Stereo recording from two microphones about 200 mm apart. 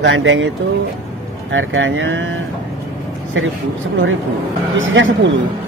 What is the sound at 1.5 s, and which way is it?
Speech, 75° right (ahead or behind).